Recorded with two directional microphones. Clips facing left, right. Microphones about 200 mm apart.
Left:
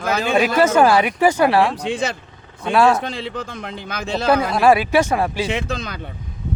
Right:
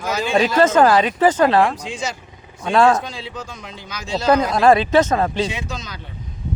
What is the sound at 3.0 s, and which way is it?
A man's voice, 60° left (ahead or behind).